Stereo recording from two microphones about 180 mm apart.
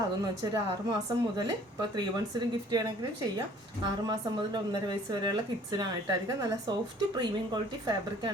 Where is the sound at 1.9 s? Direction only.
20° right (ahead or behind).